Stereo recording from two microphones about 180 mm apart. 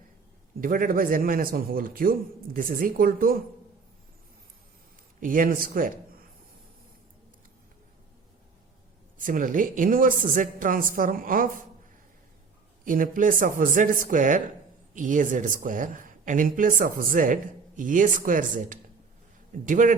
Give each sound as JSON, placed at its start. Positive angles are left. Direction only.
{"t": 0.6, "sound": "speech", "side_deg": -50}
{"t": 5.2, "sound": "speech", "side_deg": -50}
{"t": 9.1, "sound": "speech", "side_deg": -50}
{"t": 12.8, "sound": "speech", "side_deg": -50}